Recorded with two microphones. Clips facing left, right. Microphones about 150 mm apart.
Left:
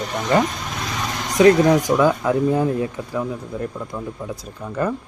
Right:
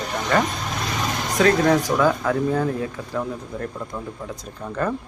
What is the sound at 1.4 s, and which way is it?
Speech, 15° left (ahead or behind).